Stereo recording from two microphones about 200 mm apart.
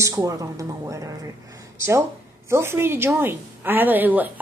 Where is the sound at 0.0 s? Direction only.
15° right (ahead or behind).